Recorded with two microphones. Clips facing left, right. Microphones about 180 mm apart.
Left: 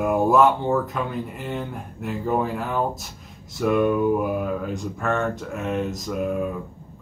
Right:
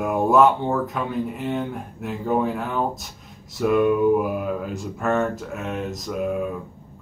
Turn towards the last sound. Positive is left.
turn(degrees=0)  # may be behind; listen again after turning